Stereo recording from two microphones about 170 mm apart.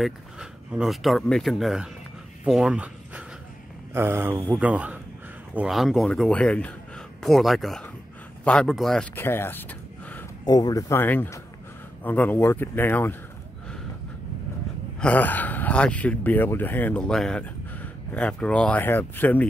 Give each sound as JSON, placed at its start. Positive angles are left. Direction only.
{"t": 0.0, "sound": "speech", "side_deg": -5}
{"t": 9.1, "sound": "a sound", "side_deg": 15}
{"t": 10.4, "sound": "speech", "side_deg": 20}
{"t": 15.0, "sound": "speech", "side_deg": 10}